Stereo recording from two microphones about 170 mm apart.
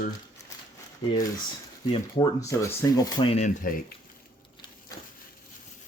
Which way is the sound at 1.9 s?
20° left (ahead or behind).